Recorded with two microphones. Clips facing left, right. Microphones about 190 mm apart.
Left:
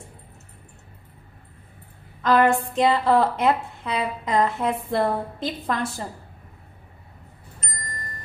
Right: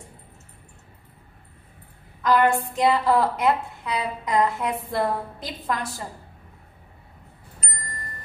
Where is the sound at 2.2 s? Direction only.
25° left (ahead or behind).